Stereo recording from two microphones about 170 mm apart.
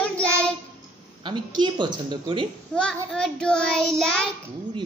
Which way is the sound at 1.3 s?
25° right (ahead or behind).